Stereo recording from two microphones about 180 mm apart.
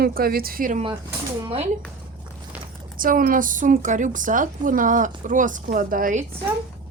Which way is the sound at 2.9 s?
50° right (ahead or behind).